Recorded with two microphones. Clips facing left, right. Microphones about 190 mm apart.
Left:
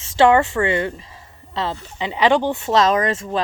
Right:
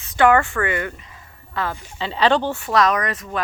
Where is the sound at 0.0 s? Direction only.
25° left (ahead or behind).